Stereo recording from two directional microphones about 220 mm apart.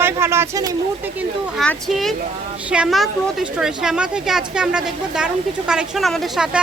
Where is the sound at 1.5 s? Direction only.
Centre (ahead or behind).